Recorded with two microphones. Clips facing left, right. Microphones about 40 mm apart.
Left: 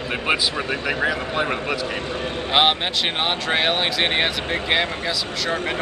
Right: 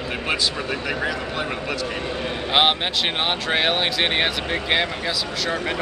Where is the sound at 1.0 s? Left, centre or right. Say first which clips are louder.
Left 3 dB; centre.